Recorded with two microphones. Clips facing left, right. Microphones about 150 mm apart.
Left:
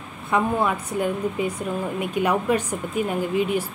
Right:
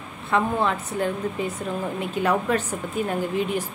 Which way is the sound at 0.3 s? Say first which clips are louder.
Left 1 dB; 10° left (ahead or behind).